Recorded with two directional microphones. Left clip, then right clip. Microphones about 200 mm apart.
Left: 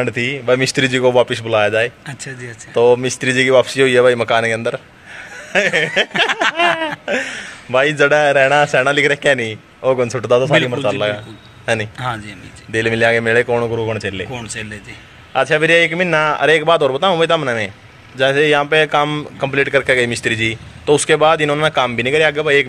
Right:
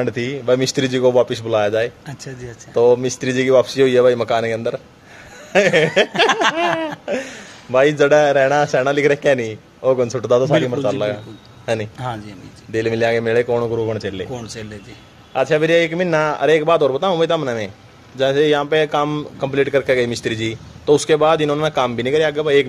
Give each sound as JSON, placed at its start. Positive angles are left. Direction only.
{"t": 0.0, "sound": "a man's voice", "side_deg": -5}
{"t": 2.0, "sound": "speech", "side_deg": -15}
{"t": 2.7, "sound": "a man's voice", "side_deg": 0}
{"t": 6.2, "sound": "a sound", "side_deg": -15}
{"t": 6.5, "sound": "a man's voice", "side_deg": 0}
{"t": 12.0, "sound": "speech", "side_deg": -15}
{"t": 12.7, "sound": "a man's voice", "side_deg": 0}
{"t": 14.5, "sound": "speech", "side_deg": -20}
{"t": 15.3, "sound": "a man's voice", "side_deg": 0}